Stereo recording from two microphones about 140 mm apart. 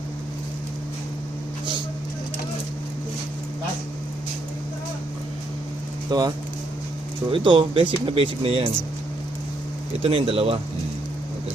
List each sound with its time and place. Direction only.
6.1 s speech: 30° right (ahead or behind)
10.0 s speech: 45° right (ahead or behind)